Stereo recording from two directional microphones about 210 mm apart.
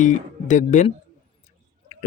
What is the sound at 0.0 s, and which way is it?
Speech, 35° left (ahead or behind).